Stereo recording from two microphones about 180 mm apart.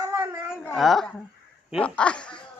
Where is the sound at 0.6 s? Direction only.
Centre (ahead or behind).